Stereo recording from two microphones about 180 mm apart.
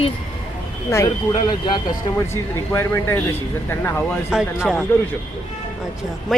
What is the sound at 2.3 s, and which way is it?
A woman's voice, 15° left (ahead or behind).